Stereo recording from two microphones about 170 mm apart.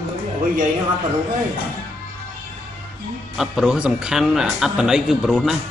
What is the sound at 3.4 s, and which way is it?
Speech, 5° right (ahead or behind).